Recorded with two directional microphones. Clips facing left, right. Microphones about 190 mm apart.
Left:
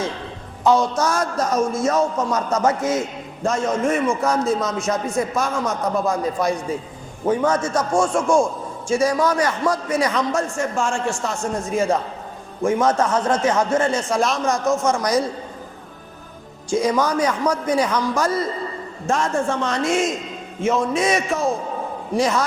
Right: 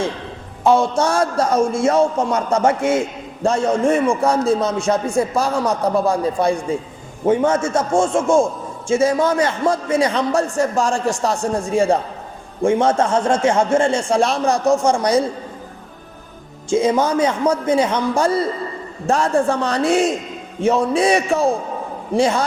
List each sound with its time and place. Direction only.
0.6 s a man's voice: 25° right (ahead or behind)
16.6 s a man's voice: 25° right (ahead or behind)